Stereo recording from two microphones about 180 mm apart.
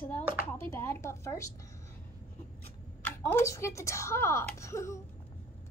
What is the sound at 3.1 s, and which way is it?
Speech, 10° left (ahead or behind).